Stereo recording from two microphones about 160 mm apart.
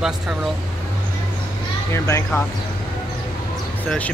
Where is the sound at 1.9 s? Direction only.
15° left (ahead or behind).